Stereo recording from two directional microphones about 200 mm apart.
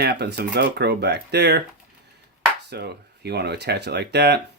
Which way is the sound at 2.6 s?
55° right (ahead or behind).